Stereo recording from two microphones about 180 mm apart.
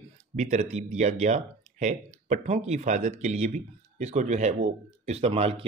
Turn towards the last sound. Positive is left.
turn(degrees=-35)  # may be behind; listen again after turning